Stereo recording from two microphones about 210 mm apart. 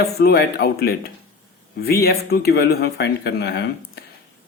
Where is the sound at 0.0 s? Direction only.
50° left (ahead or behind).